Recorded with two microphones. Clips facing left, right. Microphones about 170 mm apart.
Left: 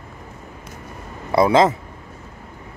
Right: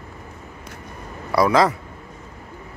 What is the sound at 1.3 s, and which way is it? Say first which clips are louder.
Speech: left 2 dB; 25° left (ahead or behind).